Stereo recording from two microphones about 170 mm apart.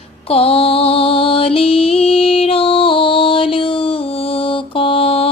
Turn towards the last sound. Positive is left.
turn(degrees=35)  # may be behind; listen again after turning